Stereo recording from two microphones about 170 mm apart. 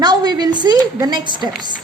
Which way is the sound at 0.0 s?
25° right (ahead or behind).